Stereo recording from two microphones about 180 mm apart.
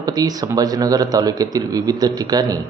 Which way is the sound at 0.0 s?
20° right (ahead or behind).